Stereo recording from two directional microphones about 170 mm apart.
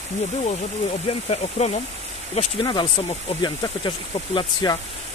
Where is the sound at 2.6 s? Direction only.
25° left (ahead or behind).